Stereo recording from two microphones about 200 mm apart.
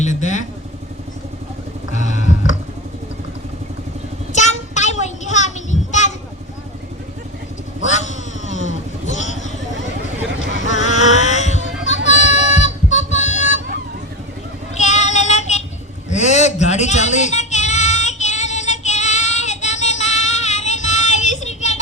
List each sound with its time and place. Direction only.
0.0 s vehicle: 40° left (ahead or behind)
2.0 s a sound: 35° left (ahead or behind)
4.3 s child singing: 35° left (ahead or behind)
7.9 s vehicle: 35° left (ahead or behind)
10.7 s music: 35° left (ahead or behind)
14.8 s child singing: 35° left (ahead or behind)
16.0 s a sound: 35° left (ahead or behind)
21.2 s child singing: 35° left (ahead or behind)